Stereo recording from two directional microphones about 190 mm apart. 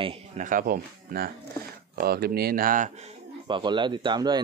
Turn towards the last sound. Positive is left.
turn(degrees=-25)  # may be behind; listen again after turning